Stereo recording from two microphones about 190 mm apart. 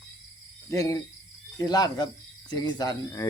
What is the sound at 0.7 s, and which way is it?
Speech, 15° left (ahead or behind).